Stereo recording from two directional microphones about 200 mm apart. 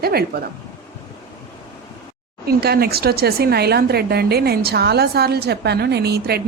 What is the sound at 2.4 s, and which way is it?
Speech, 50° right (ahead or behind).